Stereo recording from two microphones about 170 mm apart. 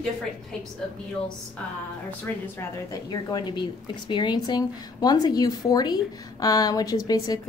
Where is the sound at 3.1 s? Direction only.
25° left (ahead or behind).